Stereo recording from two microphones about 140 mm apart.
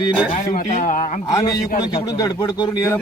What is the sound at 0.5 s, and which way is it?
Speech, 65° left (ahead or behind).